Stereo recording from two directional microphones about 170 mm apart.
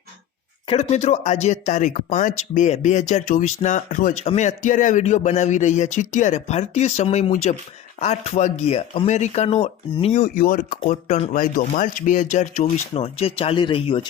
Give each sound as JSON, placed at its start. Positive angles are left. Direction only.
{"t": 0.7, "sound": "speech", "side_deg": 40}
{"t": 10.2, "sound": "speech", "side_deg": 55}